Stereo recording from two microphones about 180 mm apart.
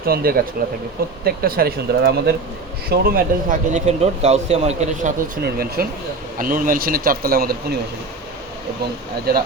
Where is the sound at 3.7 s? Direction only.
35° right (ahead or behind).